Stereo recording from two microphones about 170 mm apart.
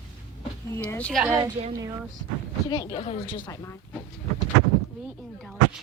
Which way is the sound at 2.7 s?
25° left (ahead or behind).